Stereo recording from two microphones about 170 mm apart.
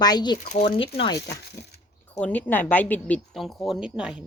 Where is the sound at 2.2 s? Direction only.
10° left (ahead or behind).